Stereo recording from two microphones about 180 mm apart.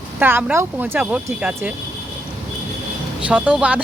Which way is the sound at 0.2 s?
10° right (ahead or behind).